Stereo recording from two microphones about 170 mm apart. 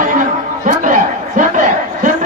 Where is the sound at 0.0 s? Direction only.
50° right (ahead or behind).